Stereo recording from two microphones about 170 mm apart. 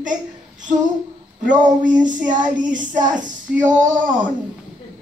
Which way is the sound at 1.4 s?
50° right (ahead or behind).